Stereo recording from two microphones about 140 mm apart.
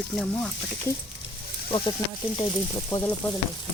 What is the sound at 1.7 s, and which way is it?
Speech, 35° left (ahead or behind).